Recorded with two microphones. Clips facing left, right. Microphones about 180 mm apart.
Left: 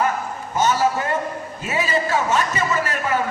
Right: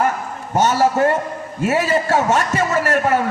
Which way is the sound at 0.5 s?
70° right (ahead or behind).